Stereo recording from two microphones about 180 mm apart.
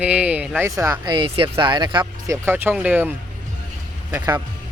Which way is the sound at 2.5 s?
10° right (ahead or behind).